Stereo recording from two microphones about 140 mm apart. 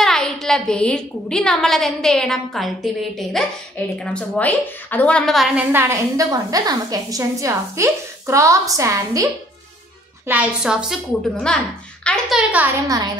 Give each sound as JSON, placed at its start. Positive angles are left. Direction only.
{"t": 0.0, "sound": "a woman's voice", "side_deg": 5}
{"t": 10.2, "sound": "a woman's voice", "side_deg": -10}
{"t": 11.4, "sound": "a child's voice", "side_deg": 5}
{"t": 12.4, "sound": "a woman's voice", "side_deg": -10}
{"t": 12.8, "sound": "a woman's voice", "side_deg": -25}